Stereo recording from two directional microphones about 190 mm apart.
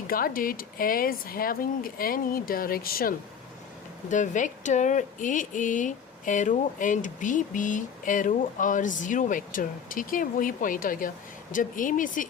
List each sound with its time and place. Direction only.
0.1 s speech: 50° left (ahead or behind)
4.1 s speech: 40° left (ahead or behind)